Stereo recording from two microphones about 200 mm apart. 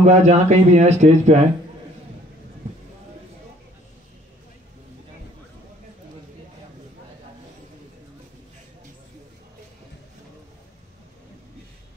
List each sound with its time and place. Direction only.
0.0 s speech: 35° right (ahead or behind)